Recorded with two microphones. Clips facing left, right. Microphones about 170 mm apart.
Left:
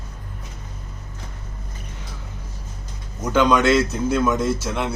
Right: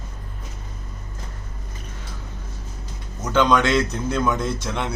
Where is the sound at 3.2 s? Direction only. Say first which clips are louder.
Left 1 dB; 10° left (ahead or behind).